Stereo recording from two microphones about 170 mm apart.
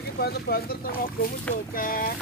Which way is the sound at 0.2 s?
65° left (ahead or behind).